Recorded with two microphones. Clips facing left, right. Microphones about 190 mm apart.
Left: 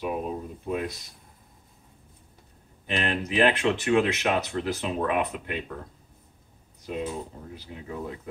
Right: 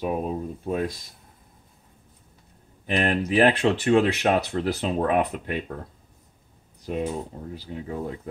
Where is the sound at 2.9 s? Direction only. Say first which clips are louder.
Right 5 dB; 35° right (ahead or behind).